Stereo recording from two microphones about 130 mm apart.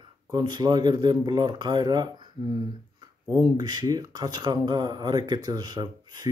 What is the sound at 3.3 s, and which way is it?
Speech, 30° right (ahead or behind).